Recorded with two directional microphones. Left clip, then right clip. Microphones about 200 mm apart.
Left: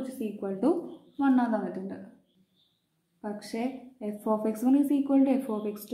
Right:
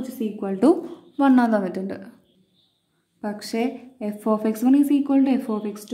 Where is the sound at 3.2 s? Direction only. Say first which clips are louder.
Right 8 dB; 40° right (ahead or behind).